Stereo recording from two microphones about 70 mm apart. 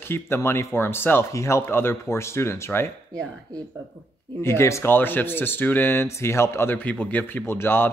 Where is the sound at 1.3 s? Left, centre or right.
Left.